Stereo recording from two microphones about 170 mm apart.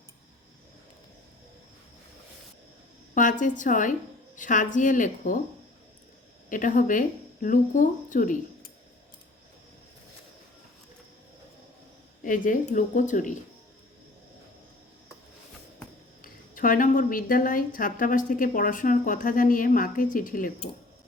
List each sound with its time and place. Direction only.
3.2 s speech: 50° left (ahead or behind)
6.5 s speech: 50° left (ahead or behind)
12.2 s speech: 50° left (ahead or behind)
16.2 s speech: 55° left (ahead or behind)